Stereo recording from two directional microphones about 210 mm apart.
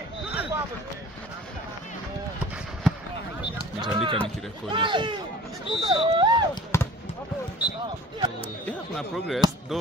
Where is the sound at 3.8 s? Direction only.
25° right (ahead or behind).